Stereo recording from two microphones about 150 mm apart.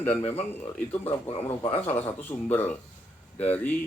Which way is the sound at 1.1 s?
40° left (ahead or behind).